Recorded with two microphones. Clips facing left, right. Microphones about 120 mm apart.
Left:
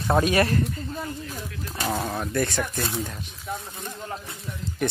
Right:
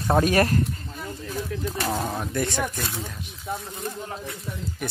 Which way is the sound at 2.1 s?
15° right (ahead or behind).